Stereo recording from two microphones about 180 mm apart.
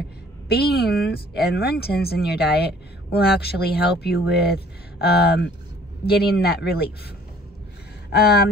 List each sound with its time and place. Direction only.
0.5 s speech: 60° left (ahead or behind)
8.1 s speech: 60° left (ahead or behind)